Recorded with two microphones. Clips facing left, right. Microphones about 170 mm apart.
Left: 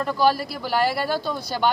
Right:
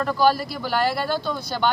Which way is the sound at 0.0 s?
5° left (ahead or behind).